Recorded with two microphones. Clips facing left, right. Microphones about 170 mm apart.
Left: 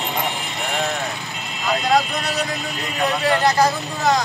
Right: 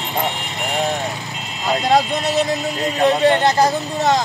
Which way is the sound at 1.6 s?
25° right (ahead or behind).